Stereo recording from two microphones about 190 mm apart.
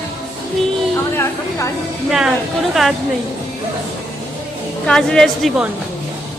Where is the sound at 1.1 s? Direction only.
15° left (ahead or behind).